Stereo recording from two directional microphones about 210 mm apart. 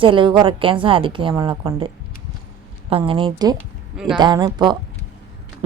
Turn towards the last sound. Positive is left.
turn(degrees=-20)  # may be behind; listen again after turning